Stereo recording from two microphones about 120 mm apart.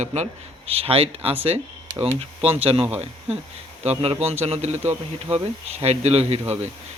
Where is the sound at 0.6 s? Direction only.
55° right (ahead or behind).